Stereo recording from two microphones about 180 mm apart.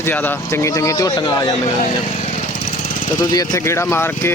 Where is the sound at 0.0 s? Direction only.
10° left (ahead or behind).